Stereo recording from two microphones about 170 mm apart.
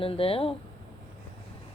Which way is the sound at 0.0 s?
35° left (ahead or behind).